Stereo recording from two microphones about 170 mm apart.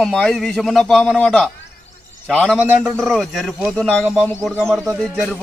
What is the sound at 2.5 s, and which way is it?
A man's voice, 5° right (ahead or behind).